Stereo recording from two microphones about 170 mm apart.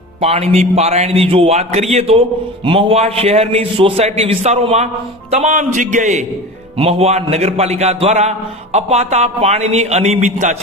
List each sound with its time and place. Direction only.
0.2 s a man's voice: 35° right (ahead or behind)